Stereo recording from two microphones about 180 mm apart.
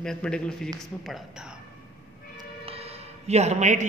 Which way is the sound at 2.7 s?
35° right (ahead or behind).